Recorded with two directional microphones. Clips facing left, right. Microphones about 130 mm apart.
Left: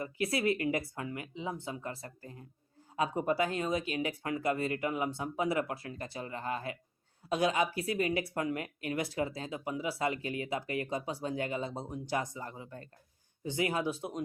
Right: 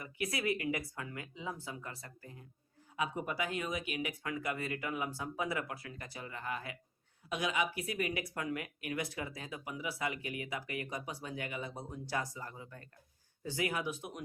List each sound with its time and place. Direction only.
0.0 s speech: 30° left (ahead or behind)